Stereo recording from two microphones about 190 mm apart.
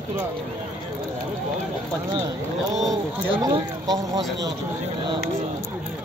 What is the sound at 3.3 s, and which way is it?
Speech, 25° right (ahead or behind).